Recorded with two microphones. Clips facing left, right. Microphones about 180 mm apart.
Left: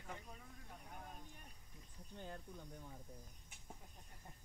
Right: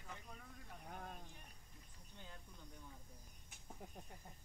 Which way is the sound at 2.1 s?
45° left (ahead or behind).